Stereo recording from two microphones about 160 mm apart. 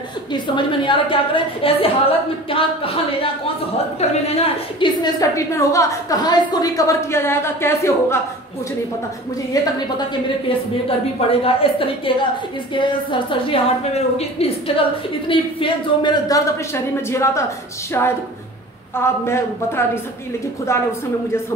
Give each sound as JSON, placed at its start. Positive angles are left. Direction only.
{"t": 0.3, "sound": "a woman's voice", "side_deg": 30}
{"t": 4.8, "sound": "a woman's voice", "side_deg": 25}
{"t": 9.5, "sound": "a woman's voice", "side_deg": 25}
{"t": 11.1, "sound": "a woman's voice", "side_deg": 35}